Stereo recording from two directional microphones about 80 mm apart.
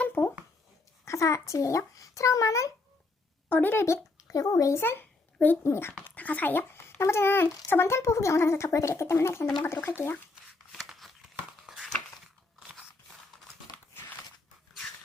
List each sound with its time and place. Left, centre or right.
0.0 s a sound: left
1.0 s speech: left
3.5 s speech: left
3.8 s a child's voice: left
4.8 s a sound: left
5.6 s speech: left
6.1 s a child's voice: centre
10.7 s crumpling: centre